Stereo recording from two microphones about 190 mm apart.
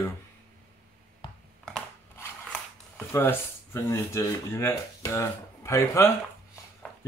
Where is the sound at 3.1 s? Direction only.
15° left (ahead or behind).